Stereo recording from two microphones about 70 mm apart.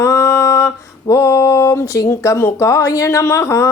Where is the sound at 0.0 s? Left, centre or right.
Left.